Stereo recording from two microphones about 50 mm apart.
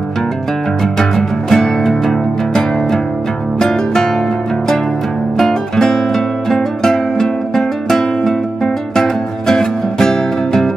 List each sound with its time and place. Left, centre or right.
0.9 s music: centre
5.4 s music: centre